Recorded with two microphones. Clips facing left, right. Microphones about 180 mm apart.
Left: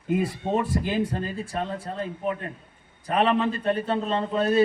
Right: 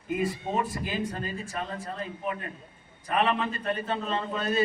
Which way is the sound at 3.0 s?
35° left (ahead or behind).